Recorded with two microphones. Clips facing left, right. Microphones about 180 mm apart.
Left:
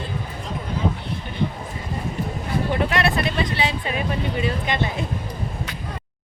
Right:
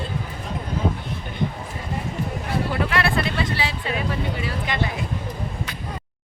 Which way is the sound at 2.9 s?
20° left (ahead or behind).